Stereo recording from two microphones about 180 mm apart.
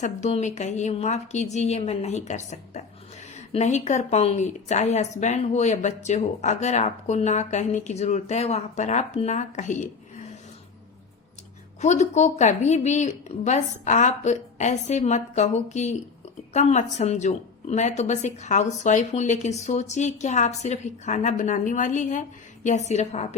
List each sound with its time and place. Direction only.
0.0 s a woman's voice: 40° left (ahead or behind)
11.8 s a woman's voice: 40° left (ahead or behind)